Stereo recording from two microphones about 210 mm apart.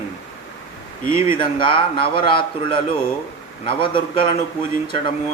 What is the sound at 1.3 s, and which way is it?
A man's voice, 25° left (ahead or behind).